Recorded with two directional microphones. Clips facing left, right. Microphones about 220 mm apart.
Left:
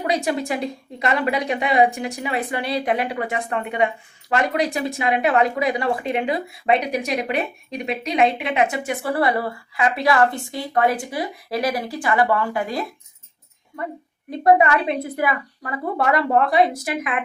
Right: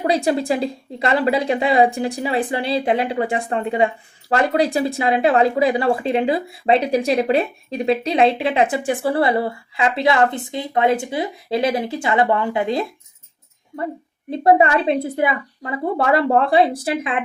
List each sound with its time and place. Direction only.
0.1 s a woman's voice: 30° right (ahead or behind)
14.3 s speech: 30° right (ahead or behind)